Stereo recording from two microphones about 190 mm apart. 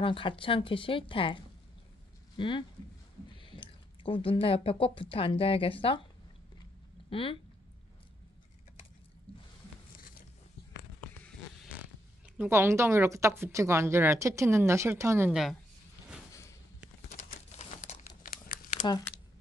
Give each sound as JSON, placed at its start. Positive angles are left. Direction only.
{"t": 0.0, "sound": "speech", "side_deg": 25}
{"t": 3.3, "sound": "a sound", "side_deg": 25}
{"t": 5.1, "sound": "speech", "side_deg": 30}
{"t": 7.1, "sound": "speech", "side_deg": 30}
{"t": 12.4, "sound": "speech", "side_deg": -15}
{"t": 17.6, "sound": "crumpling", "side_deg": 35}
{"t": 18.8, "sound": "speech", "side_deg": 20}